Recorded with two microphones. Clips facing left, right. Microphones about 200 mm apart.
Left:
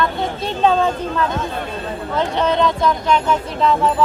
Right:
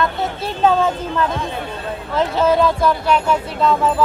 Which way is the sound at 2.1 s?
Centre (ahead or behind).